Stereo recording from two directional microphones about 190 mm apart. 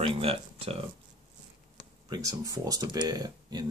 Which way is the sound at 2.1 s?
20° right (ahead or behind).